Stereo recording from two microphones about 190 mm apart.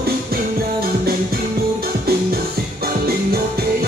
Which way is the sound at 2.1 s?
55° right (ahead or behind).